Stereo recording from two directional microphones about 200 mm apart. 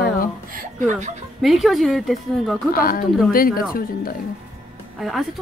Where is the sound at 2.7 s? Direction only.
45° left (ahead or behind).